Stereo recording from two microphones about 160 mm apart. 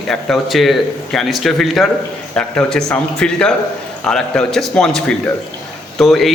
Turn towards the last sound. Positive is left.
turn(degrees=0)  # may be behind; listen again after turning